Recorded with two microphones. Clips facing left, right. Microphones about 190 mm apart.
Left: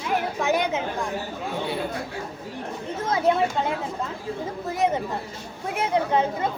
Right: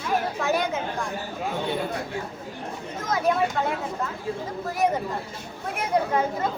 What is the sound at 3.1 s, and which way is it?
Speech, 25° left (ahead or behind).